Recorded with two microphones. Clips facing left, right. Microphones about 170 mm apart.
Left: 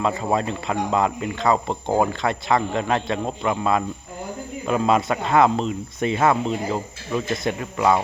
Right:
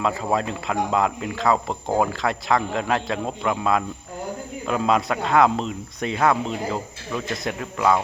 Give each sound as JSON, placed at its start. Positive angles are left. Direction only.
{"t": 0.0, "sound": "speech", "side_deg": 0}